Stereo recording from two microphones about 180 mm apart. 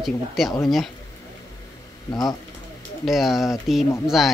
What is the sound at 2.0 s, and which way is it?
Speech, 20° left (ahead or behind).